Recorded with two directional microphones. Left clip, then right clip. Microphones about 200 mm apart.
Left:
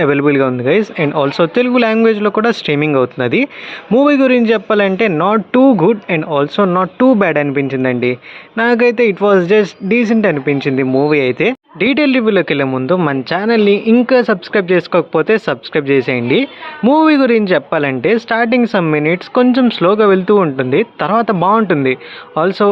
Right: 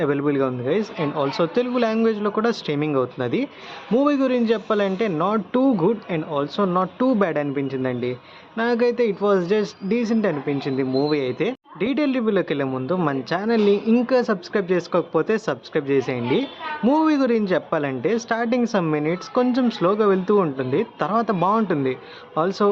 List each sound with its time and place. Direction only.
0.0 s speech: 35° left (ahead or behind)